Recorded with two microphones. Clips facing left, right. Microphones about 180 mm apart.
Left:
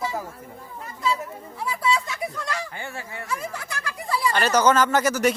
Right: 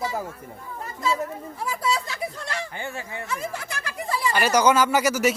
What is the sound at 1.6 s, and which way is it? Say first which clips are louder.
Speech: left 2 dB; 40° right (ahead or behind).